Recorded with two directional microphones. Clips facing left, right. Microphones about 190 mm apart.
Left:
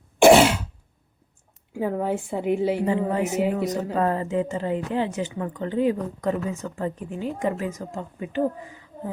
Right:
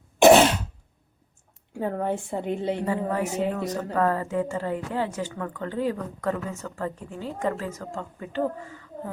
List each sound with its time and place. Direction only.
1.7 s a woman's voice: 5° left (ahead or behind)
2.8 s a woman's voice: 20° left (ahead or behind)